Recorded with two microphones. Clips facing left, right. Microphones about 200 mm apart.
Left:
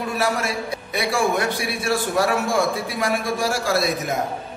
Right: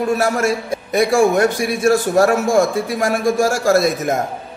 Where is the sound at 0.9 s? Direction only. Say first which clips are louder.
Right 8 dB; 45° right (ahead or behind).